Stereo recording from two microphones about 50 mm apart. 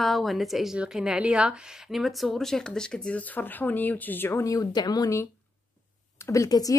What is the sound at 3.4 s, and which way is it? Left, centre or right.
Speech, left.